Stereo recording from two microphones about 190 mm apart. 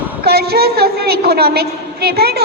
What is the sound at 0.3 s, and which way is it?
A woman's voice, 55° right (ahead or behind).